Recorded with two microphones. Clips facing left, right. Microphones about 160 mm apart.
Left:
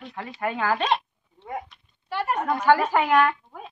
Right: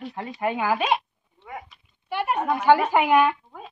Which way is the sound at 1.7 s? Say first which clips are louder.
Even; 5° right (ahead or behind).